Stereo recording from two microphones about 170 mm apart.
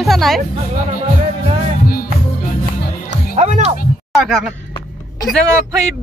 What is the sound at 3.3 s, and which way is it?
Music, 45° right (ahead or behind).